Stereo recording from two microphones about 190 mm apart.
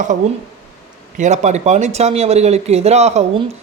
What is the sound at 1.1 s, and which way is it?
A man's voice, 40° right (ahead or behind).